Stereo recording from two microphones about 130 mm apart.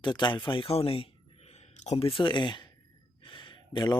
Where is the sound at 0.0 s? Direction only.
35° left (ahead or behind); by 2.0 s 60° left (ahead or behind).